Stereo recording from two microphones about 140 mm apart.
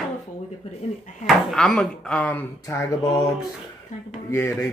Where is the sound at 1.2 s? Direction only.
5° left (ahead or behind); by 3.3 s 20° left (ahead or behind).